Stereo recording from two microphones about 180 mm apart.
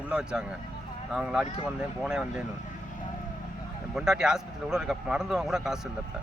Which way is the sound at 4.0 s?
5° right (ahead or behind).